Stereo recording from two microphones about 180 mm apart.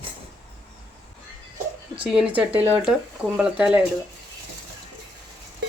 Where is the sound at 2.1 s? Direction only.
5° right (ahead or behind).